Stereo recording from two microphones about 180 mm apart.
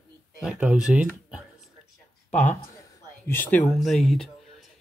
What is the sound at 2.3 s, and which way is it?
A man's voice, 10° left (ahead or behind).